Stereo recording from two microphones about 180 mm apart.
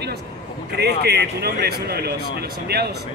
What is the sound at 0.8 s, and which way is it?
Speech, 65° right (ahead or behind).